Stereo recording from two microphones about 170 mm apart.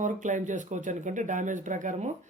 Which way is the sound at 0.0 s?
45° right (ahead or behind).